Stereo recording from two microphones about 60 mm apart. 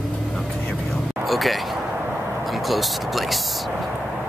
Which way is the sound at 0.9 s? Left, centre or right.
Centre.